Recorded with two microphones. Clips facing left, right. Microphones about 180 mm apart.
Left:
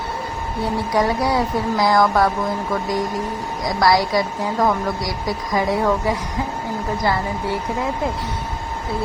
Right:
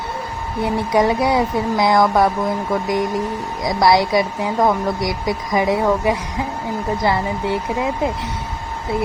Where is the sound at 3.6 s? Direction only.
25° right (ahead or behind).